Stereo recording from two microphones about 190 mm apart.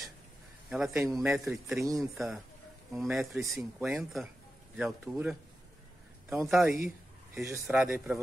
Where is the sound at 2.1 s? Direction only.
Centre (ahead or behind).